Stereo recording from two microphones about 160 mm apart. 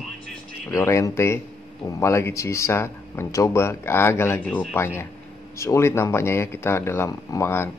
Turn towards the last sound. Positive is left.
turn(degrees=15)  # may be behind; listen again after turning